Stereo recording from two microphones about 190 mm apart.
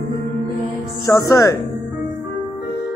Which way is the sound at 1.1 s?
20° left (ahead or behind).